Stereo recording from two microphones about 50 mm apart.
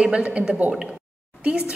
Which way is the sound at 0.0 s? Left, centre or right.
Right.